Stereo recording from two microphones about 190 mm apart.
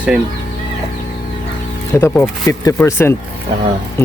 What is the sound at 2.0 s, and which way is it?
Speech, 15° left (ahead or behind).